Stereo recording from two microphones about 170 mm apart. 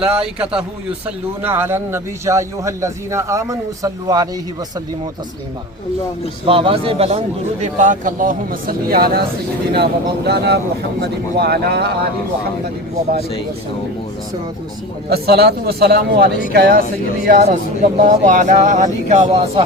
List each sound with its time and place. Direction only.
0.0 s a man's voice: 5° right (ahead or behind); by 4.3 s 20° right (ahead or behind)
6.4 s a man's voice: 30° right (ahead or behind); by 11.9 s 70° right (ahead or behind)
15.1 s a man's voice: 70° right (ahead or behind)
17.4 s a man's voice: 45° right (ahead or behind)
19.2 s speech: 30° right (ahead or behind)